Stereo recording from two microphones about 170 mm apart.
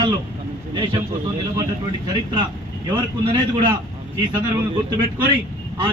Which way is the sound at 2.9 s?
30° right (ahead or behind).